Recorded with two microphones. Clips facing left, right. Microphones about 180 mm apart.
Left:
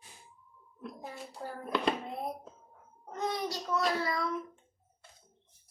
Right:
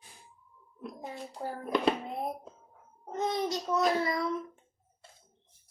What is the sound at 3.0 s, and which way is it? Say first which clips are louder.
A child's voice: right 3 dB; 25° right (ahead or behind).